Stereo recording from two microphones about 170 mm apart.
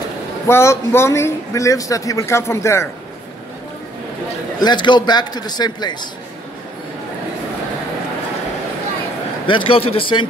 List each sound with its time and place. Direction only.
0.5 s speech: 15° left (ahead or behind)
4.6 s a man's voice: 25° left (ahead or behind)
9.5 s a man's voice: 35° left (ahead or behind)